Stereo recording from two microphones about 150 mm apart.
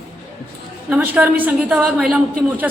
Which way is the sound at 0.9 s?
10° right (ahead or behind).